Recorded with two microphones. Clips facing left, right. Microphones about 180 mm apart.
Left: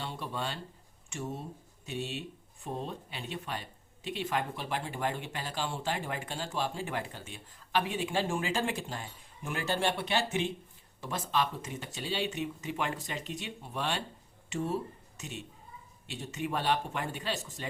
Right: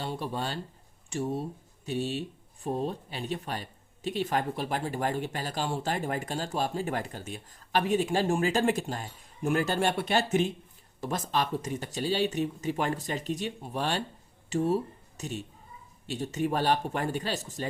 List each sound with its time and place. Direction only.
0.0 s speech: 40° right (ahead or behind)